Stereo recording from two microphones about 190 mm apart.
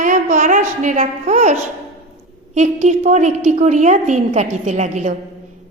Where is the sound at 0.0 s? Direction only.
40° right (ahead or behind).